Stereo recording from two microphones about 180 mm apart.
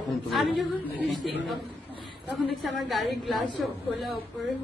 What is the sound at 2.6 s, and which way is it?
Speech, centre (ahead or behind).